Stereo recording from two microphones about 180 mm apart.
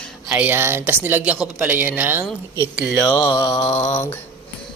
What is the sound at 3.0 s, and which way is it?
Mantra, 25° left (ahead or behind).